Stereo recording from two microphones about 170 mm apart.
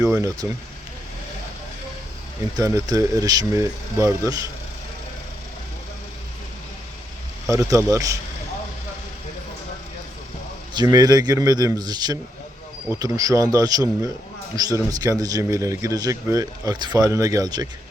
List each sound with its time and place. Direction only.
0.4 s speech: 15° right (ahead or behind)
2.6 s a man's voice: 20° right (ahead or behind)
7.4 s a man's voice: 20° right (ahead or behind)
10.8 s a man's voice: 25° right (ahead or behind)